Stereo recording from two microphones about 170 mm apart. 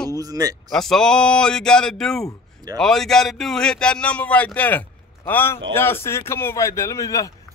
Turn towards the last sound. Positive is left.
turn(degrees=20)  # may be behind; listen again after turning